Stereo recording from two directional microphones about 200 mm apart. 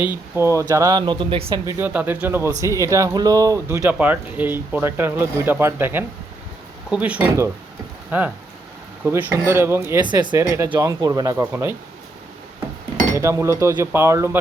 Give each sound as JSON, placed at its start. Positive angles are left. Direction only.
{"t": 0.1, "sound": "a man's voice", "side_deg": -10}
{"t": 1.6, "sound": "a man's voice", "side_deg": -10}
{"t": 13.1, "sound": "a man's voice", "side_deg": -15}